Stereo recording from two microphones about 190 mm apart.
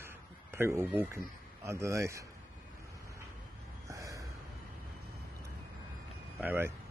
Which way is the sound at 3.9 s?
15° right (ahead or behind).